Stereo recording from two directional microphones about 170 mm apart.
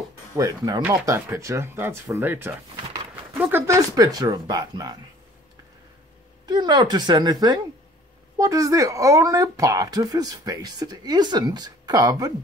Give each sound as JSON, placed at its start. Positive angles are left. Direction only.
{"t": 0.4, "sound": "speech", "side_deg": -20}
{"t": 2.7, "sound": "a sound", "side_deg": -30}
{"t": 3.3, "sound": "speech", "side_deg": -10}
{"t": 6.4, "sound": "speech", "side_deg": -25}